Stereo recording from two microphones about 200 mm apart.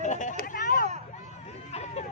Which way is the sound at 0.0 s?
40° left (ahead or behind).